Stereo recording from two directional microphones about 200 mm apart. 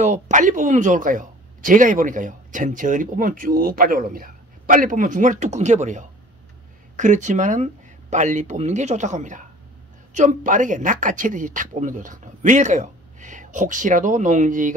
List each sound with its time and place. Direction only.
0.0 s speech: 35° right (ahead or behind)